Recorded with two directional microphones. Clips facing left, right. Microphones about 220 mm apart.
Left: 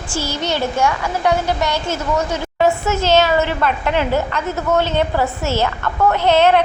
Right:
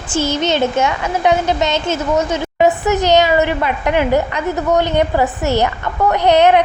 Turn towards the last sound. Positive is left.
turn(degrees=-15)  # may be behind; listen again after turning